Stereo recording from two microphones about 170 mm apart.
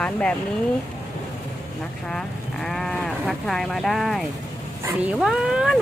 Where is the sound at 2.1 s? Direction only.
5° left (ahead or behind).